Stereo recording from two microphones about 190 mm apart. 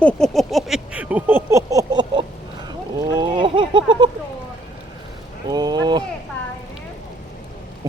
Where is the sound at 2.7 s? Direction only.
20° right (ahead or behind).